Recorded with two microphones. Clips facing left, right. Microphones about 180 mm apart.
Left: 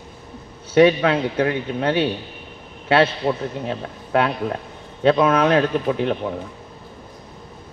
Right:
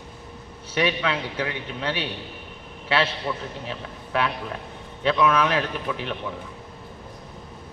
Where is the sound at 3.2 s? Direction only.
35° left (ahead or behind).